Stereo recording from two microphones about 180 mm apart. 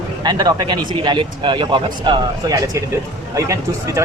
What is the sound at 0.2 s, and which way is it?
Speech, 20° right (ahead or behind).